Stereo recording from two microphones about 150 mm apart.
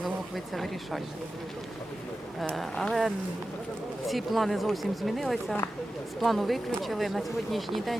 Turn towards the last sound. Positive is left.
turn(degrees=0)  # may be behind; listen again after turning